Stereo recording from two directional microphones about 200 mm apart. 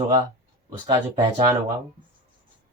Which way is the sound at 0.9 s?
20° right (ahead or behind).